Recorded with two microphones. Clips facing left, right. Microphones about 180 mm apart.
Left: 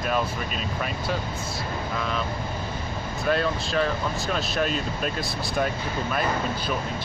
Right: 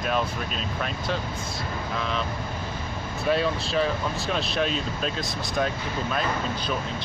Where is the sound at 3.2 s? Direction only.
Centre (ahead or behind).